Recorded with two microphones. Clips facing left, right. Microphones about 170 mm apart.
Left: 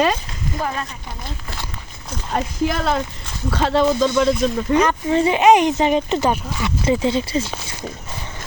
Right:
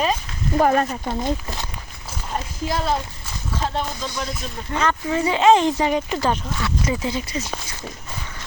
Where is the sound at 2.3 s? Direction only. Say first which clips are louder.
Left 5 dB; 85° left.